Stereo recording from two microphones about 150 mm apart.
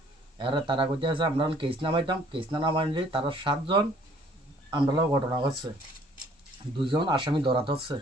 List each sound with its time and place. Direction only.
0.3 s speech: 35° right (ahead or behind)
6.7 s speech: 30° right (ahead or behind)